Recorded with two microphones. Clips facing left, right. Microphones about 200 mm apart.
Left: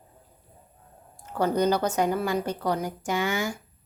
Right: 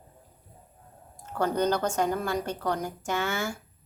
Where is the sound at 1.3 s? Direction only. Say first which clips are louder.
Left 3 dB; 10° left (ahead or behind).